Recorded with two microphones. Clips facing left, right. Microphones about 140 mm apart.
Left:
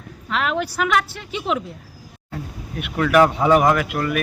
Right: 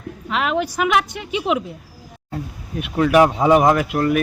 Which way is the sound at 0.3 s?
5° right (ahead or behind).